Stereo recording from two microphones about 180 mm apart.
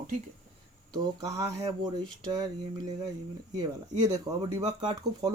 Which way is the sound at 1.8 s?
25° right (ahead or behind).